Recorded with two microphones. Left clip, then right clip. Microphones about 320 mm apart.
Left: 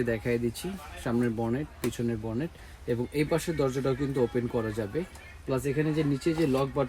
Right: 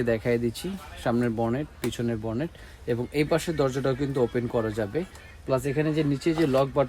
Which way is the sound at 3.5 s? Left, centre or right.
Centre.